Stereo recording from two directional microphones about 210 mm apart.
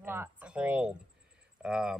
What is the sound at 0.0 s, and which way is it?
Speech, 10° right (ahead or behind).